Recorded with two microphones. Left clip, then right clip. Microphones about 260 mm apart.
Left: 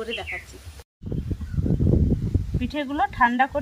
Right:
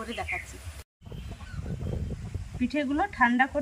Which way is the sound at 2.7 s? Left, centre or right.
Left.